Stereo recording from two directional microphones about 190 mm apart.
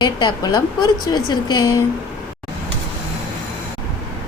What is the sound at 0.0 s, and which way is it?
A woman's voice, 25° left (ahead or behind).